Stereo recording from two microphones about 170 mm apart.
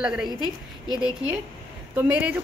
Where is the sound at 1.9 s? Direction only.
10° right (ahead or behind).